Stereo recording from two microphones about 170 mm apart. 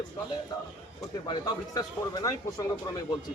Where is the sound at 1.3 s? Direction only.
20° left (ahead or behind).